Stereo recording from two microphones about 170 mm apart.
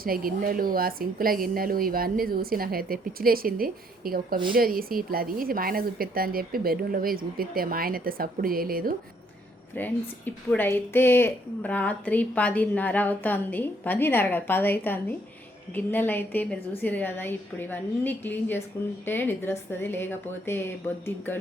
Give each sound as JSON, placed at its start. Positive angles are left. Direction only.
{"t": 0.0, "sound": "a woman's voice", "side_deg": -60}
{"t": 9.7, "sound": "a woman's voice", "side_deg": 10}